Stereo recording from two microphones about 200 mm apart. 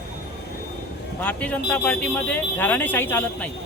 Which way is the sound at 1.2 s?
5° left (ahead or behind).